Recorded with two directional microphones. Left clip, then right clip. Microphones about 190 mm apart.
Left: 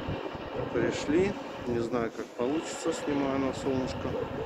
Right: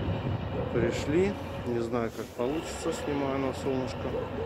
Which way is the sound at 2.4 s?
15° left (ahead or behind).